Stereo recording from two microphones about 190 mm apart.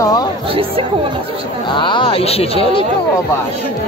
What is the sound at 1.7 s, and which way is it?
Speech, 25° left (ahead or behind).